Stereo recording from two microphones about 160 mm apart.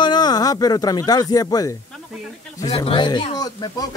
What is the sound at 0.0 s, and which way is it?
Speech, 25° left (ahead or behind).